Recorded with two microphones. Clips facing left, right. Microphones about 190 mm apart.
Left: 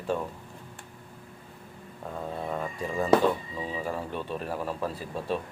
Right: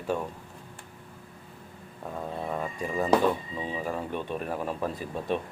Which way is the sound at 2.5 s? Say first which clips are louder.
Right 1 dB; 10° right (ahead or behind).